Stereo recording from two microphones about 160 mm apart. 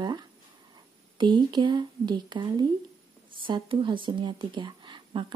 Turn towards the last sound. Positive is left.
turn(degrees=-30)  # may be behind; listen again after turning